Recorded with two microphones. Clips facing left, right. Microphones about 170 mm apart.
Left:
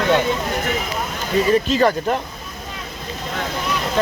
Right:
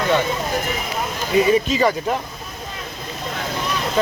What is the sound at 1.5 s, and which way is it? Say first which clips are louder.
Speech: left 1 dB; 10° right (ahead or behind).